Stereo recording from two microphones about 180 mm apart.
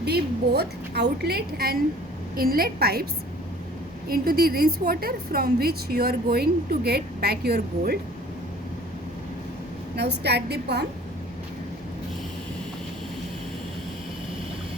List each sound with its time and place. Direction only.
0.0 s a woman's voice: 60° right (ahead or behind)
4.1 s a woman's voice: 60° right (ahead or behind)
9.9 s a woman's voice: 65° right (ahead or behind)